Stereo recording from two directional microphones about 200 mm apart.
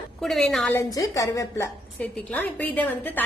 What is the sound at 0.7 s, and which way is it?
A woman's voice, 15° left (ahead or behind).